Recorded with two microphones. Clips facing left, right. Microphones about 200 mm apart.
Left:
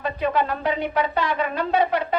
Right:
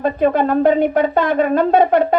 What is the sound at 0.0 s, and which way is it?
Speech, 50° right (ahead or behind).